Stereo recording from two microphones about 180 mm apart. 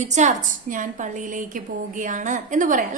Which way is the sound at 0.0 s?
40° right (ahead or behind).